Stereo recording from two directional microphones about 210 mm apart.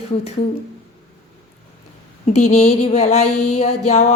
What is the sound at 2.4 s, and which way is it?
A woman's voice, 35° left (ahead or behind).